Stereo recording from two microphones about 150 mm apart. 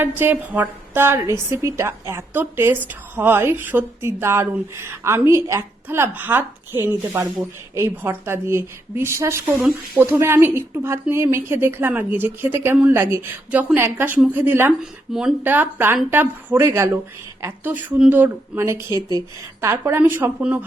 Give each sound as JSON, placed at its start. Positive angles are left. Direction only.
{"t": 0.0, "sound": "a woman's voice", "side_deg": -15}